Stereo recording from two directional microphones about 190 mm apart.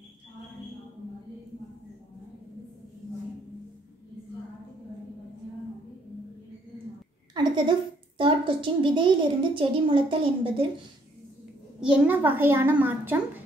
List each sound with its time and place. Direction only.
7.3 s a sound: 25° right (ahead or behind)
8.2 s a woman's voice: 25° right (ahead or behind)
11.8 s a child's voice: 10° right (ahead or behind)